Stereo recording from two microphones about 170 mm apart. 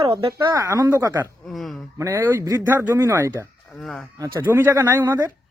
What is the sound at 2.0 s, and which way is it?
Speech, 15° right (ahead or behind).